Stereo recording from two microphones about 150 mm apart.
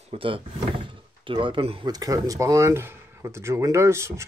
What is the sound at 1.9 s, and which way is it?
Speech, 25° right (ahead or behind).